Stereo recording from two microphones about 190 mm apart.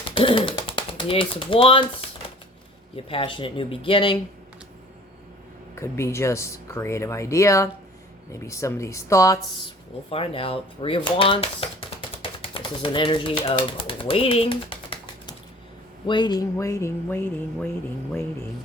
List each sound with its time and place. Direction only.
0.0 s a sound: 25° left (ahead or behind)
2.9 s speech: 30° left (ahead or behind)
5.7 s speech: 15° left (ahead or behind)
10.1 s speech: 30° left (ahead or behind); by 18.4 s 10° left (ahead or behind)